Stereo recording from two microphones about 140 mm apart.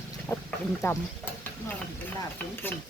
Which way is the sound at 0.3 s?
20° left (ahead or behind).